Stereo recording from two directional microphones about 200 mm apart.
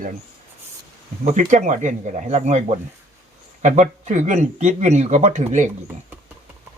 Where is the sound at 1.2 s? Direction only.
35° right (ahead or behind).